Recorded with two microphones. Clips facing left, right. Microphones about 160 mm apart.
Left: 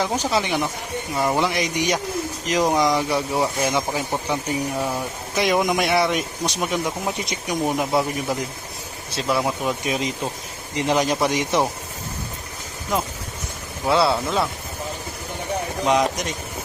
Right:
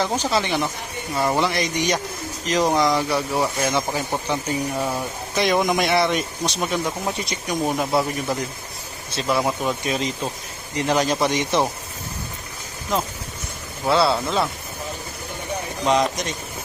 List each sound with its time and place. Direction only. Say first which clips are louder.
0.0 s speech: even; 10° left (ahead or behind)
9.1 s speech: right 1 dB; centre (ahead or behind)
13.8 s speech: even; 15° left (ahead or behind)
15.9 s speech: even; 10° left (ahead or behind)